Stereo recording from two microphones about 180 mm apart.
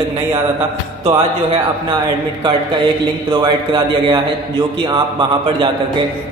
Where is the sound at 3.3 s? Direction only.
25° right (ahead or behind).